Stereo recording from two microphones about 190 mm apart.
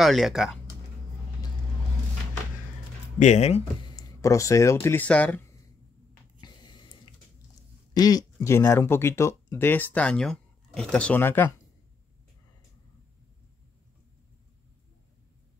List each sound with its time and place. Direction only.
0.0 s speech: centre (ahead or behind)
3.2 s speech: 35° left (ahead or behind)
3.9 s speech: 15° left (ahead or behind)
6.4 s a sound: 25° left (ahead or behind)
7.9 s speech: 20° left (ahead or behind)